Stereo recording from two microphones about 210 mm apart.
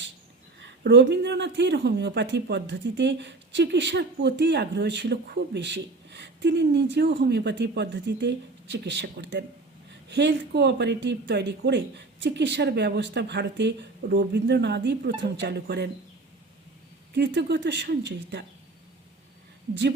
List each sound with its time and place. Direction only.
0.9 s speech: 55° right (ahead or behind)
17.2 s speech: 55° right (ahead or behind)